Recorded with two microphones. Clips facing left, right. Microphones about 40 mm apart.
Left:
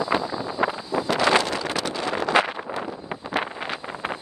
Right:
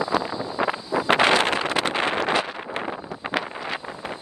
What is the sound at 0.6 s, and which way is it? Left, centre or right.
Vehicle, right.